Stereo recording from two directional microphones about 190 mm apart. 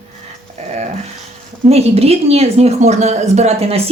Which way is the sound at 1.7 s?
35° right (ahead or behind).